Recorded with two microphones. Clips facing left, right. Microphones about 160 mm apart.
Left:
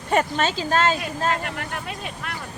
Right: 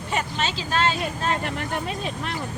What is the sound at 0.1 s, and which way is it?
Speech, 50° left (ahead or behind).